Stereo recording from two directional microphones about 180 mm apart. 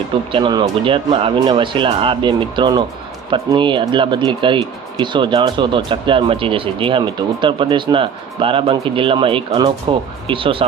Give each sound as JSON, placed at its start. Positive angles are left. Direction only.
{"t": 0.3, "sound": "speech", "side_deg": -30}